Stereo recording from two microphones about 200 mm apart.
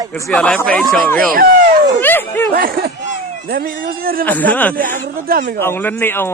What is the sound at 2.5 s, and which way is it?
Speech, 45° right (ahead or behind).